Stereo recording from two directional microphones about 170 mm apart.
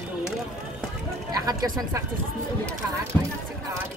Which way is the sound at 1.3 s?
20° right (ahead or behind).